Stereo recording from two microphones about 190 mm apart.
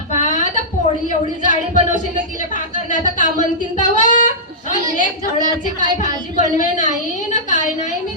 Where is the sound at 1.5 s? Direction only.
45° left (ahead or behind).